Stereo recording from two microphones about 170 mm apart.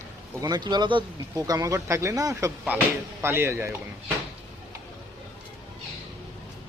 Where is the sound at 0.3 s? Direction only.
25° right (ahead or behind).